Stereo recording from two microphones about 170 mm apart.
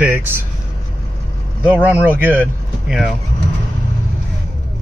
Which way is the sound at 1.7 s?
10° right (ahead or behind).